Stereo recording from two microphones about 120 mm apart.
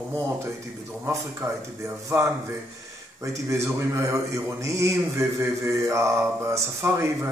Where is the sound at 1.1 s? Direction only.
25° right (ahead or behind).